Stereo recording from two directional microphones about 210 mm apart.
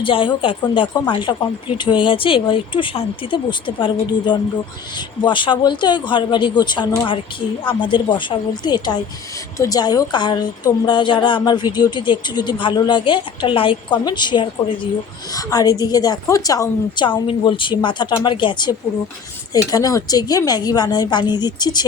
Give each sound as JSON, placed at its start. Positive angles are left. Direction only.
{"t": 0.0, "sound": "a woman's voice", "side_deg": 25}